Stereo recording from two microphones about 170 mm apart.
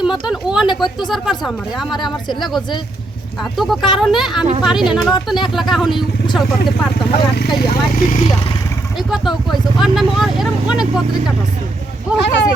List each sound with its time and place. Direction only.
0.0 s speech: 5° right (ahead or behind)
1.9 s speech: 25° left (ahead or behind)
3.6 s speech: centre (ahead or behind)
7.1 s speech: 75° left (ahead or behind)
7.7 s speech: 55° left (ahead or behind)
9.0 s speech: centre (ahead or behind)
12.2 s speech: 90° left